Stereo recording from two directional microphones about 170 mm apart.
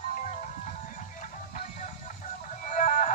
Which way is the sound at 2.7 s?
45° left (ahead or behind).